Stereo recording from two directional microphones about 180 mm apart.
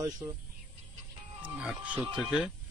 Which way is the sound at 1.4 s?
5° right (ahead or behind).